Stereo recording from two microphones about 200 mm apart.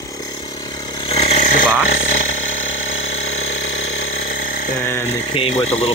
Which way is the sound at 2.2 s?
80° left.